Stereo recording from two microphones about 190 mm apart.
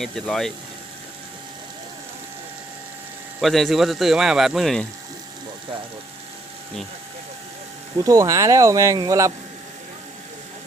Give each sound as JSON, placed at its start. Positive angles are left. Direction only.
{"t": 0.0, "sound": "speech", "side_deg": 0}
{"t": 3.4, "sound": "speech", "side_deg": 0}
{"t": 7.9, "sound": "speech", "side_deg": -20}